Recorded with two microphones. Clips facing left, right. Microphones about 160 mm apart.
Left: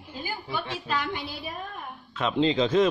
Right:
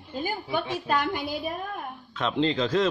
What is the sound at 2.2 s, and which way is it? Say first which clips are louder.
Speech: left 2 dB; 10° left (ahead or behind).